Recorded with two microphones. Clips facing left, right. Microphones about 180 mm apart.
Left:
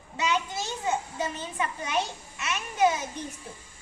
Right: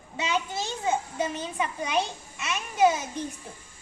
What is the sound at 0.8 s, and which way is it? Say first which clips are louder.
A child's voice: right 2 dB; 15° right (ahead or behind).